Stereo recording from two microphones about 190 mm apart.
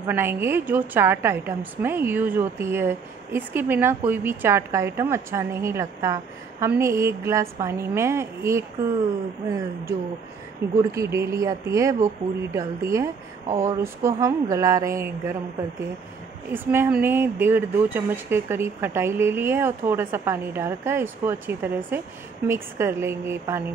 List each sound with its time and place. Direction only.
0.0 s a woman's voice: 10° right (ahead or behind)
10.9 s a woman's voice: 15° right (ahead or behind)
16.5 s a woman's voice: 10° right (ahead or behind)